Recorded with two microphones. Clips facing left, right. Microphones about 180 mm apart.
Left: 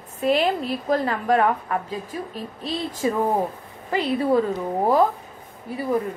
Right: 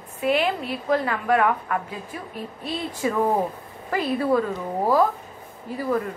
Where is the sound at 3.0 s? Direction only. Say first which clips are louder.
Even; 30° left (ahead or behind).